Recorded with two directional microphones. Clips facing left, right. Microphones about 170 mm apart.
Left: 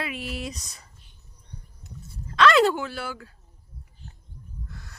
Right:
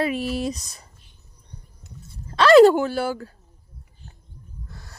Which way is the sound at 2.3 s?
35° right (ahead or behind).